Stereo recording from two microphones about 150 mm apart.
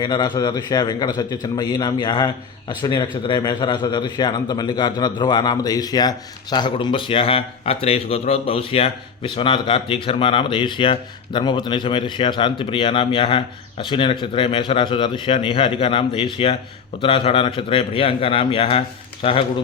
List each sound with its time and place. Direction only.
0.0 s a man's voice: 30° left (ahead or behind)